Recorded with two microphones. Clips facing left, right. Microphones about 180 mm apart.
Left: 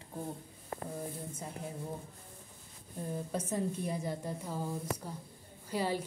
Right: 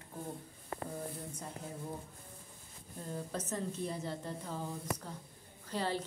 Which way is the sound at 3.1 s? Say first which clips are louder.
Left 3 dB; 10° left (ahead or behind).